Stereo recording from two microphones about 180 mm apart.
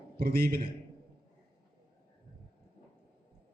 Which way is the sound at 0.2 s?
55° right (ahead or behind).